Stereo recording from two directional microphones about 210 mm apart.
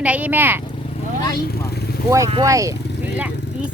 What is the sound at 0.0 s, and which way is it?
Speech, 5° right (ahead or behind).